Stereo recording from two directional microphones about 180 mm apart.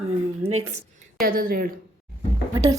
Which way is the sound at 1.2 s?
55° right (ahead or behind).